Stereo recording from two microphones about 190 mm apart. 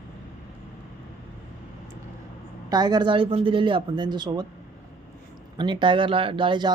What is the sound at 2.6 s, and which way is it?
Speech, 20° right (ahead or behind).